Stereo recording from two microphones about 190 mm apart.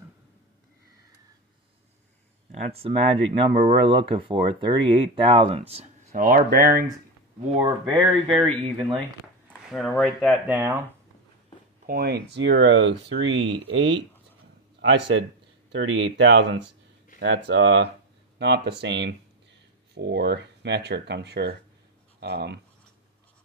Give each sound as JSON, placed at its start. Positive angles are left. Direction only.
{"t": 2.5, "sound": "speech", "side_deg": -35}
{"t": 6.1, "sound": "speech", "side_deg": -45}
{"t": 7.6, "sound": "speech", "side_deg": -25}
{"t": 9.7, "sound": "speech", "side_deg": 0}
{"t": 11.8, "sound": "a man's voice", "side_deg": -55}